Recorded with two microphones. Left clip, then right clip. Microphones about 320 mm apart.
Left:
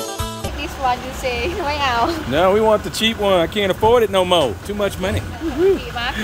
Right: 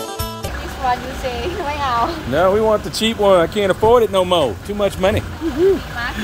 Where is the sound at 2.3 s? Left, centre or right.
Centre.